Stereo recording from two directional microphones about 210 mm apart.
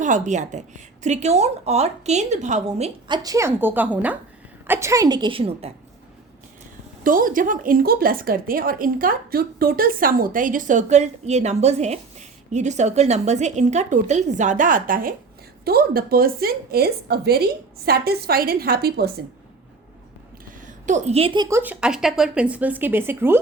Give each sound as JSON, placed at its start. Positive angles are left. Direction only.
{"t": 0.0, "sound": "a woman's voice", "side_deg": -35}
{"t": 3.2, "sound": "a woman's voice", "side_deg": -15}
{"t": 7.0, "sound": "a woman's voice", "side_deg": -40}
{"t": 20.4, "sound": "a woman's voice", "side_deg": -40}